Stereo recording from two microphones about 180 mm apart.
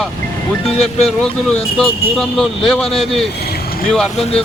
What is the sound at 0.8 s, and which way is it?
Speech, 35° left (ahead or behind).